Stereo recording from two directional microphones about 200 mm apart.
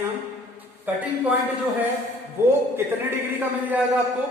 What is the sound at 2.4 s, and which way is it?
Speech, 10° right (ahead or behind).